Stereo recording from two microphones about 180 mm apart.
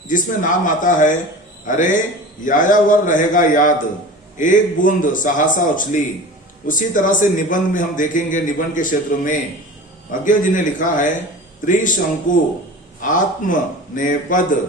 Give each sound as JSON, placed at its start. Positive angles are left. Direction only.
{"t": 0.1, "sound": "a man's voice", "side_deg": 45}